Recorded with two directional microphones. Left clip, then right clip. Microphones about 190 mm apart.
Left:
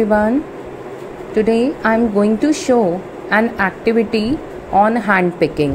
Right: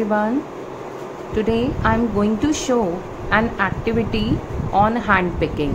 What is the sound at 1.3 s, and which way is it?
A woman's voice, 15° left (ahead or behind).